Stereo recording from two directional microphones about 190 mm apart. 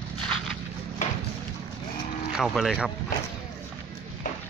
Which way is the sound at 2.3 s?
Centre (ahead or behind).